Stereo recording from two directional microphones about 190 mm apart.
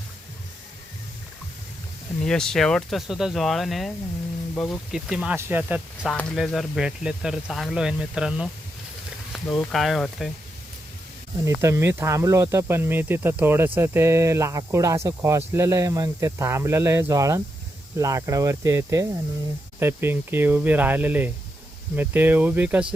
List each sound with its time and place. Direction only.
2.2 s speech: 5° left (ahead or behind)
6.1 s speech: 5° left (ahead or behind)
11.4 s speech: 15° right (ahead or behind)